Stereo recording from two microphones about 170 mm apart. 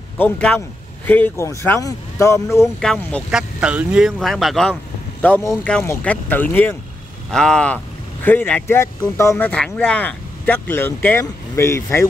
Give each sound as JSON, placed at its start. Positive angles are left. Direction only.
{"t": 0.2, "sound": "speech", "side_deg": 5}
{"t": 2.8, "sound": "speech", "side_deg": 5}